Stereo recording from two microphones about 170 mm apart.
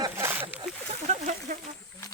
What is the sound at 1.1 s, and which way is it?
Speech, 45° right (ahead or behind).